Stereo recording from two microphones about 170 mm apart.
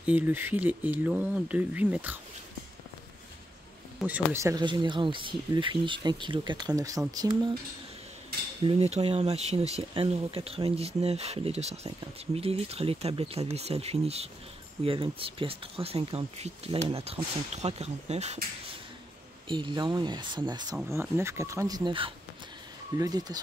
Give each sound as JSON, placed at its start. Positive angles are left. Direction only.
{"t": 0.0, "sound": "speech", "side_deg": -10}
{"t": 4.0, "sound": "speech", "side_deg": -10}
{"t": 8.6, "sound": "speech", "side_deg": -35}
{"t": 19.4, "sound": "speech", "side_deg": -30}
{"t": 20.9, "sound": "speech", "side_deg": -15}